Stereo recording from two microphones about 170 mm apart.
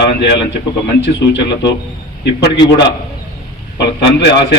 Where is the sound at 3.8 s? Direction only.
90° left.